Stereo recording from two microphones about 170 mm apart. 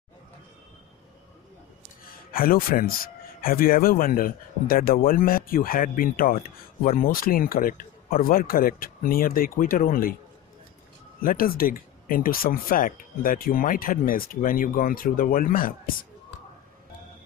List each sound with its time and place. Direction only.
2.3 s speech: 55° left (ahead or behind)
11.2 s speech: 60° left (ahead or behind)